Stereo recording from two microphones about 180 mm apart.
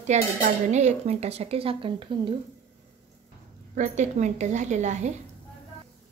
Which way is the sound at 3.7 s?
40° right (ahead or behind).